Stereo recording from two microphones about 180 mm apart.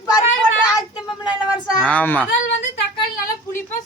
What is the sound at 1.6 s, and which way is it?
Speech, 5° left (ahead or behind).